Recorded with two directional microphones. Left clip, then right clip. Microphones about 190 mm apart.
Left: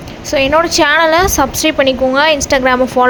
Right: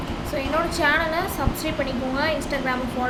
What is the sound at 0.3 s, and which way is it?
A woman's voice, 55° left (ahead or behind).